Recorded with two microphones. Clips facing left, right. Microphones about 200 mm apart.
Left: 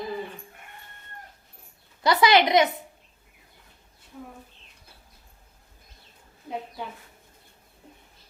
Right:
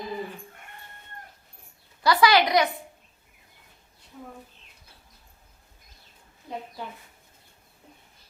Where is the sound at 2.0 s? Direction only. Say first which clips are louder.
Left 1 dB; 25° left (ahead or behind).